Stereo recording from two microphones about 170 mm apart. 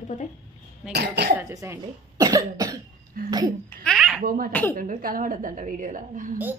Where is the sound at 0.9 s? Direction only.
75° right (ahead or behind).